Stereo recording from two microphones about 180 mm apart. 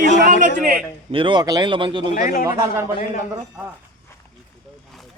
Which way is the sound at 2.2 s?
50° left (ahead or behind).